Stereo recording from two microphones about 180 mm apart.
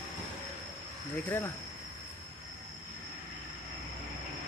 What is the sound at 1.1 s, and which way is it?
Speech, 10° left (ahead or behind).